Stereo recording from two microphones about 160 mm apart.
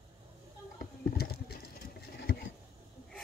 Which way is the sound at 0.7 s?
75° left (ahead or behind).